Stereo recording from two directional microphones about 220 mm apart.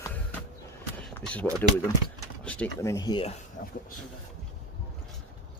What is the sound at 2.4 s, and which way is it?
Speech, 10° left (ahead or behind).